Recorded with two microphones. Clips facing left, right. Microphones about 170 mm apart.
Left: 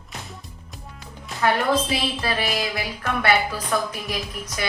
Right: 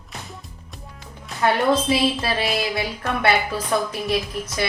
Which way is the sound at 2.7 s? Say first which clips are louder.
Right 2 dB; 25° right (ahead or behind).